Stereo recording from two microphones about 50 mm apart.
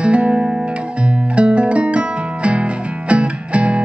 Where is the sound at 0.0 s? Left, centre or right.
Right.